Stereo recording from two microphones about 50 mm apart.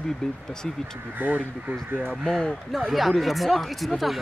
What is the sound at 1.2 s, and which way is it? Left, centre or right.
Speech, right.